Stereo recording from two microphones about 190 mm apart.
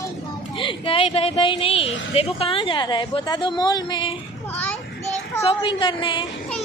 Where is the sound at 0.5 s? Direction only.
30° left (ahead or behind).